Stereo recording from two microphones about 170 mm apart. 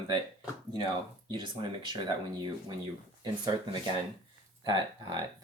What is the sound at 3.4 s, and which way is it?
Speech, 25° right (ahead or behind).